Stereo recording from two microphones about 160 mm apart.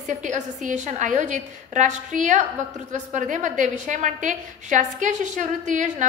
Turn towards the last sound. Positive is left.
turn(degrees=-50)  # may be behind; listen again after turning